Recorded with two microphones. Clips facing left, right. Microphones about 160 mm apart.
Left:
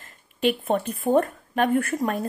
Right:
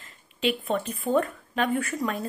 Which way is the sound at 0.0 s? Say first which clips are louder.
Left 4 dB; 50° left (ahead or behind).